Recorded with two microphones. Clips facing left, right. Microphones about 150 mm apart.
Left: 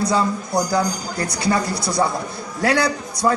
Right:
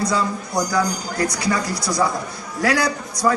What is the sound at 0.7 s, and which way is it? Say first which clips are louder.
Speech: left 1 dB; 30° left (ahead or behind).